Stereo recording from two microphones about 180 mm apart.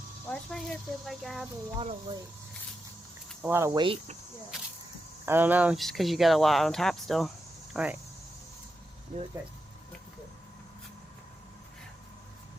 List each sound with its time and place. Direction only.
0.3 s speech: 5° left (ahead or behind)
1.8 s speech: 35° right (ahead or behind)
3.4 s speech: 15° right (ahead or behind)
3.8 s speech: 30° right (ahead or behind)
5.2 s speech: 10° right (ahead or behind)